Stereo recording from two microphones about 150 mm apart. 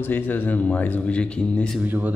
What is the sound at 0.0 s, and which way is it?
Speech, 10° left (ahead or behind).